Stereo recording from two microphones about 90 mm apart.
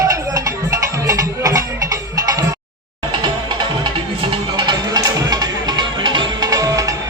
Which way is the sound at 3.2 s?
55° right (ahead or behind).